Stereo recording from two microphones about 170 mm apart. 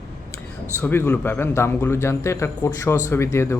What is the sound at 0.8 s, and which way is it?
A man's voice, 10° left (ahead or behind).